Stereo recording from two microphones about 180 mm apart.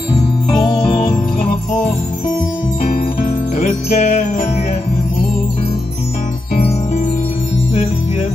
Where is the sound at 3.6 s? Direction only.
40° left (ahead or behind).